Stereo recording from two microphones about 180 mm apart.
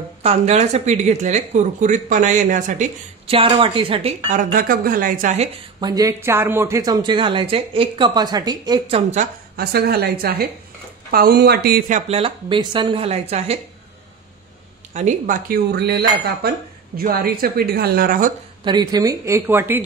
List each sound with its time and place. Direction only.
0.2 s speech: 35° right (ahead or behind)
4.3 s speech: 45° right (ahead or behind)
5.8 s speech: 20° right (ahead or behind)
9.6 s speech: 60° right (ahead or behind)
11.9 s speech: 30° right (ahead or behind)
15.0 s speech: 45° right (ahead or behind)
18.6 s speech: 25° right (ahead or behind)